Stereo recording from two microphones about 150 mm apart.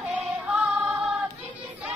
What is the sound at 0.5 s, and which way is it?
Music, 10° right (ahead or behind).